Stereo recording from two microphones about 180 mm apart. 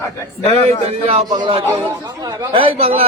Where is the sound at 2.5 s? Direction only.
30° right (ahead or behind).